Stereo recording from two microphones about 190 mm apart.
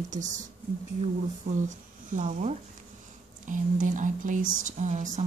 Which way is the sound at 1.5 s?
55° right (ahead or behind).